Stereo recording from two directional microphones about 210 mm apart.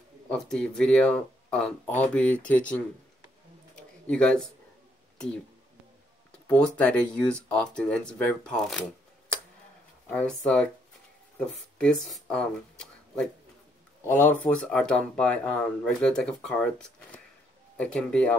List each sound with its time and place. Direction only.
0.3 s speech: 5° left (ahead or behind)
3.7 s a sound: 5° left (ahead or behind)
6.4 s speech: 5° left (ahead or behind)
10.0 s speech: 5° left (ahead or behind)